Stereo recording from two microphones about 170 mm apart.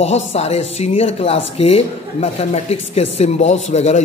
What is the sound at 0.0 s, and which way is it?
Speech, 40° left (ahead or behind).